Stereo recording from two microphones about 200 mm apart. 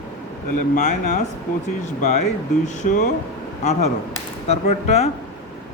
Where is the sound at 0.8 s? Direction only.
35° left (ahead or behind).